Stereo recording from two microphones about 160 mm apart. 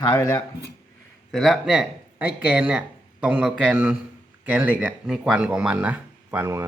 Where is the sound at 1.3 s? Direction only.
Centre (ahead or behind).